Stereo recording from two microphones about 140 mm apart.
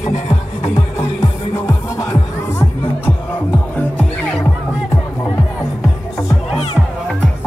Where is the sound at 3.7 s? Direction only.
10° left (ahead or behind).